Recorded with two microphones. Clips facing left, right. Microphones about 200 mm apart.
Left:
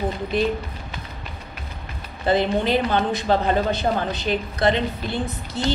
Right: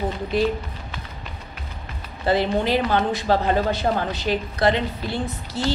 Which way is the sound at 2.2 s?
20° left (ahead or behind).